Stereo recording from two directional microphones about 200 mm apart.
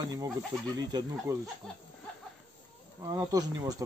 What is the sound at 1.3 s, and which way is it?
Speech, 15° right (ahead or behind).